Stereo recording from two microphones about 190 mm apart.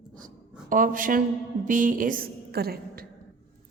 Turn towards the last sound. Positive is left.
turn(degrees=-55)  # may be behind; listen again after turning